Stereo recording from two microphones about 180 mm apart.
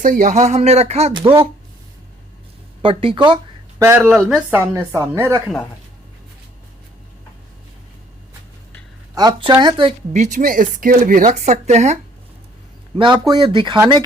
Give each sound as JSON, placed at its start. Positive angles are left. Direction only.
{"t": 0.0, "sound": "speech", "side_deg": -45}
{"t": 2.8, "sound": "speech", "side_deg": -30}
{"t": 3.8, "sound": "speech", "side_deg": -15}
{"t": 4.7, "sound": "speech", "side_deg": -15}
{"t": 9.1, "sound": "speech", "side_deg": -25}
{"t": 10.1, "sound": "speech", "side_deg": -40}
{"t": 13.0, "sound": "speech", "side_deg": -25}